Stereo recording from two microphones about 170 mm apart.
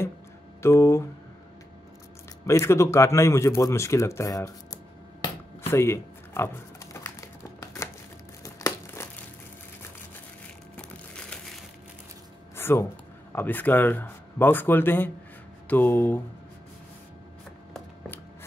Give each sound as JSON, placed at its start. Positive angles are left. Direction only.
{"t": 0.6, "sound": "a sound", "side_deg": 15}
{"t": 2.4, "sound": "speech", "side_deg": 15}
{"t": 5.7, "sound": "typing", "side_deg": 15}
{"t": 8.5, "sound": "crumpling", "side_deg": 20}
{"t": 10.8, "sound": "crumpling", "side_deg": 5}
{"t": 12.5, "sound": "a sound", "side_deg": 15}
{"t": 13.3, "sound": "speech", "side_deg": 10}